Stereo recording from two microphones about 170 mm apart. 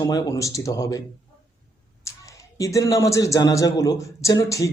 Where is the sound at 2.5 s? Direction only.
20° left (ahead or behind).